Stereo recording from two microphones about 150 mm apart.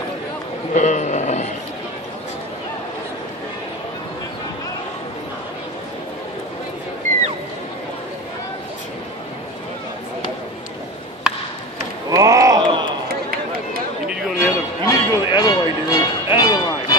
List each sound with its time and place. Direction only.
0.7 s vehicle: 50° left (ahead or behind)
12.1 s a sound: 25° right (ahead or behind)
14.4 s music: 25° left (ahead or behind)